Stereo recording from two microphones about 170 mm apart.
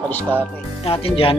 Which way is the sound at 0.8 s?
35° left (ahead or behind).